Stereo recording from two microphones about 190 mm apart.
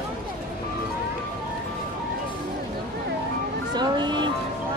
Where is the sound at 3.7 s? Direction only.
25° right (ahead or behind).